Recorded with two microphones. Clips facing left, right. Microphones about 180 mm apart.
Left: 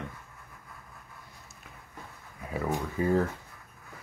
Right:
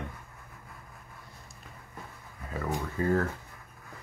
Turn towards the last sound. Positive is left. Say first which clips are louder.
# left 1 dB
turn(degrees=15)  # may be behind; listen again after turning